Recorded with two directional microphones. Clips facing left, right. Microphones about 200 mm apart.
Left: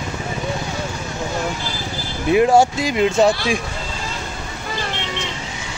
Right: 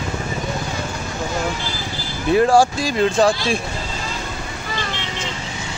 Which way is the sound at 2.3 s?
20° left (ahead or behind).